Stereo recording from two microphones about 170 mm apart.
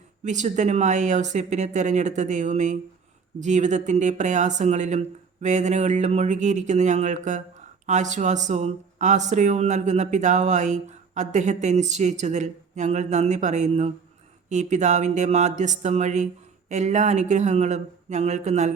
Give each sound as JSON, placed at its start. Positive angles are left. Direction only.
{"t": 0.3, "sound": "speech", "side_deg": -45}